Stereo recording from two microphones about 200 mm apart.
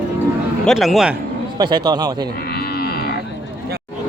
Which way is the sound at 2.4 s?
55° left (ahead or behind).